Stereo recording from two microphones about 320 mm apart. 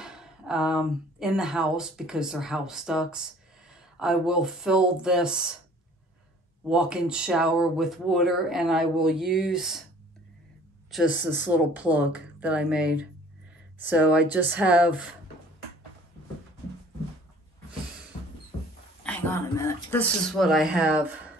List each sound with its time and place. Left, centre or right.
0.0 s speech: centre
6.7 s speech: centre
11.1 s speech: left
11.4 s speech: centre
19.0 s speech: centre